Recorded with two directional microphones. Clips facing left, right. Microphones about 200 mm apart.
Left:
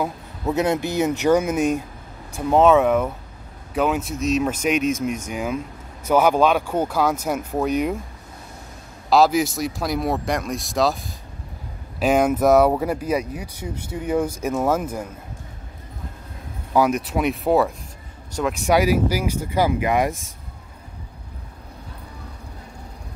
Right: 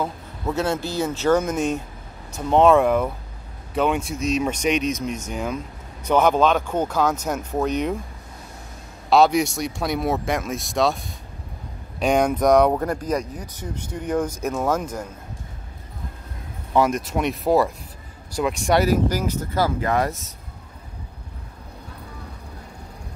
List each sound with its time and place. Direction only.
0.0 s speech: 15° left (ahead or behind)
9.1 s speech: centre (ahead or behind)
16.7 s speech: centre (ahead or behind)
18.7 s speech: 10° left (ahead or behind)